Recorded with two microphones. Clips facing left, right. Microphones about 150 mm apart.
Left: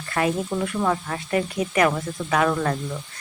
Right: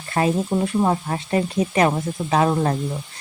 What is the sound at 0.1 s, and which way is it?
Speech, 25° right (ahead or behind).